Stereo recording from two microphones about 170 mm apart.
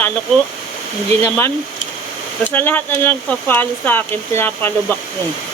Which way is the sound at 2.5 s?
10° left (ahead or behind).